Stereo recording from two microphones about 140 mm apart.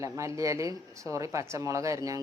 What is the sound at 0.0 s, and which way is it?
Speech, 20° right (ahead or behind).